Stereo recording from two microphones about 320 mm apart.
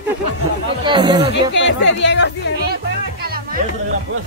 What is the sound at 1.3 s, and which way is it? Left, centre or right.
Speech, left.